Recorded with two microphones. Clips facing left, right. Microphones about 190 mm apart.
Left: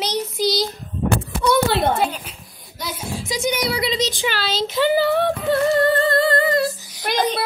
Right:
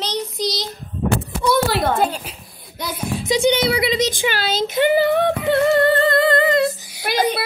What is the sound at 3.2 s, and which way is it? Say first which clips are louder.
Speech: right 6 dB; 30° right (ahead or behind).